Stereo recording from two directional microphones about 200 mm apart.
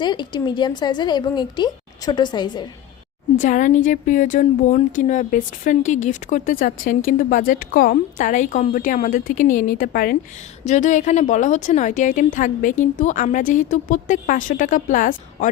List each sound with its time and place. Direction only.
0.0 s a woman's voice: 20° left (ahead or behind)
3.4 s a woman's voice: 40° left (ahead or behind)
10.6 s a woman's voice: 35° left (ahead or behind)